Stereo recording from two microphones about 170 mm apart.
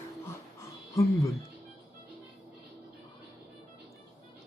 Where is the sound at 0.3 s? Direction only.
15° left (ahead or behind).